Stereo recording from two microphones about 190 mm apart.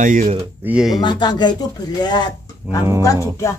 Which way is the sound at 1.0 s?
25° left (ahead or behind).